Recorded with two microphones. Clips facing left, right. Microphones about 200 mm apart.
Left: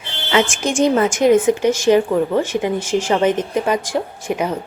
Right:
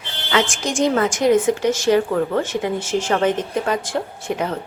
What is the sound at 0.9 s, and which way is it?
A woman's voice, 20° left (ahead or behind).